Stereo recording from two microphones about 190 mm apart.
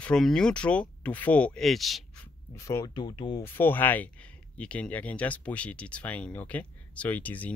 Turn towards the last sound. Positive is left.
turn(degrees=10)  # may be behind; listen again after turning